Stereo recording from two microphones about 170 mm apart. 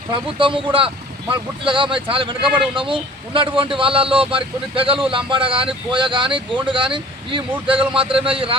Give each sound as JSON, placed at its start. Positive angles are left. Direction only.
{"t": 0.1, "sound": "speech", "side_deg": -30}